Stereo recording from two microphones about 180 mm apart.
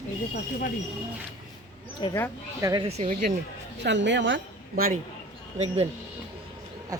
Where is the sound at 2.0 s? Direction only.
25° left (ahead or behind).